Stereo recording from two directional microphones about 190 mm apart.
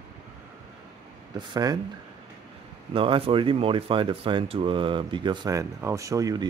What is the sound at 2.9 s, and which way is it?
Speech, 30° right (ahead or behind).